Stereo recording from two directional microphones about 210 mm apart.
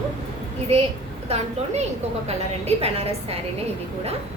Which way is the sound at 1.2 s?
30° right (ahead or behind).